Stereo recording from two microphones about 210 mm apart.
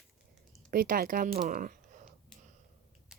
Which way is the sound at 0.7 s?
45° right (ahead or behind).